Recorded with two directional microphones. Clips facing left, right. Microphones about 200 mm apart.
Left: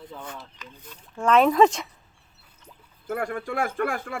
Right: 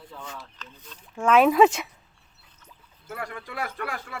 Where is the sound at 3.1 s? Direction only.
50° left (ahead or behind).